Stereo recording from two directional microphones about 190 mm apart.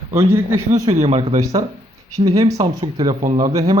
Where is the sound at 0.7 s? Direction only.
35° right (ahead or behind).